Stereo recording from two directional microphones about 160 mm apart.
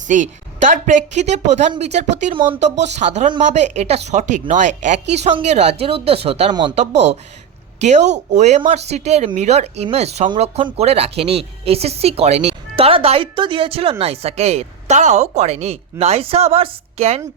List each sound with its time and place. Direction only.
0.1 s speech: 50° right (ahead or behind)
6.5 s speech: 30° right (ahead or behind)
6.7 s speech: 45° right (ahead or behind)